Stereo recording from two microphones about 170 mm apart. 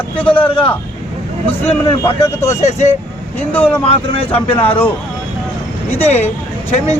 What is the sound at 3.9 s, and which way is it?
Speech, 35° left (ahead or behind).